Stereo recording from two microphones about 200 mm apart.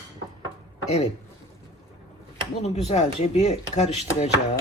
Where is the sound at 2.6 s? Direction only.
35° left (ahead or behind).